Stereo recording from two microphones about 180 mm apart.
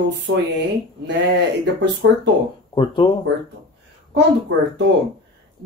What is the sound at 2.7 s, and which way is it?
Speech, 25° left (ahead or behind).